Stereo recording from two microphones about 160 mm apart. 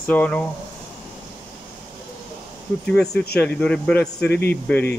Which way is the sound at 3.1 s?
85° left.